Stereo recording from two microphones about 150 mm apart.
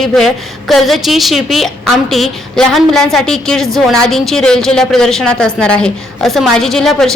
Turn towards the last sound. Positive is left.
turn(degrees=5)  # may be behind; listen again after turning